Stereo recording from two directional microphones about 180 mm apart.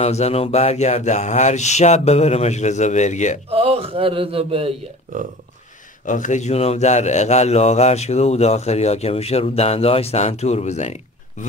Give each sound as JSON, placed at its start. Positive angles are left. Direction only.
{"t": 0.0, "sound": "a man's voice", "side_deg": 35}
{"t": 3.4, "sound": "mantra", "side_deg": -35}
{"t": 5.1, "sound": "speech", "side_deg": -45}
{"t": 6.0, "sound": "a man's voice", "side_deg": 45}